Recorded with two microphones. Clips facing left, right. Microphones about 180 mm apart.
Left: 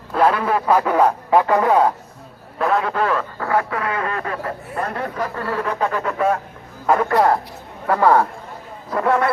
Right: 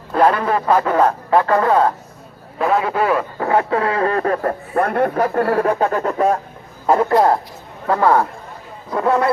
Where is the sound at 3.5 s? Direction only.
25° right (ahead or behind).